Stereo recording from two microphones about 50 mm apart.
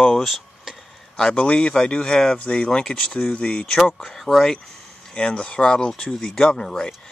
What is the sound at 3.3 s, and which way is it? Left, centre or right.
Speech, left.